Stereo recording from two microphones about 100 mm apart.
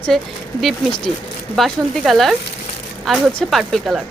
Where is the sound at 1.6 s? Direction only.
Centre (ahead or behind).